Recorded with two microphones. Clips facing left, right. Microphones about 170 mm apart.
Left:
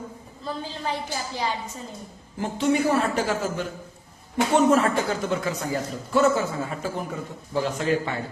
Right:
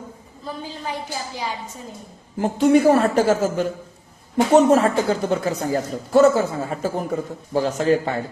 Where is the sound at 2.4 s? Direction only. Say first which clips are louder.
Right 7 dB; 45° right (ahead or behind).